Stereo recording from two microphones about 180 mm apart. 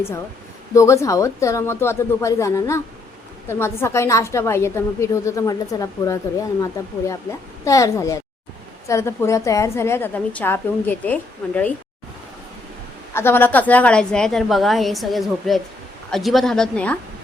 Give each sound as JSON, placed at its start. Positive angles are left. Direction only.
{"t": 0.7, "sound": "a woman's voice", "side_deg": 15}
{"t": 13.1, "sound": "a woman's voice", "side_deg": 10}